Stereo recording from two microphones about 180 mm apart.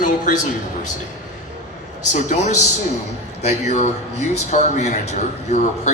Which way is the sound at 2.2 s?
40° left (ahead or behind).